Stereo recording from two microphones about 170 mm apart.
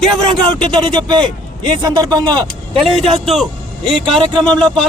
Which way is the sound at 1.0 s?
25° right (ahead or behind).